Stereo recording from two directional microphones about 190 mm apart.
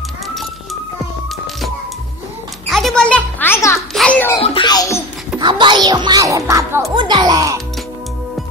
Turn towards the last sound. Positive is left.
turn(degrees=-20)  # may be behind; listen again after turning